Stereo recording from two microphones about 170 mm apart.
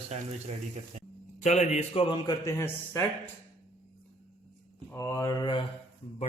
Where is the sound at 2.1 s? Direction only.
25° left (ahead or behind).